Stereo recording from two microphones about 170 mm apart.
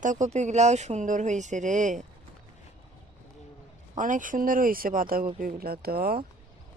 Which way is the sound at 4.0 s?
50° right (ahead or behind).